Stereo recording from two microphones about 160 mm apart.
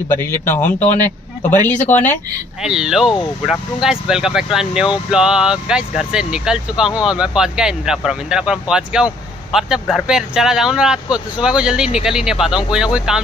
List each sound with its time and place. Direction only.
0.1 s speech: 15° left (ahead or behind)
2.6 s speech: 5° right (ahead or behind)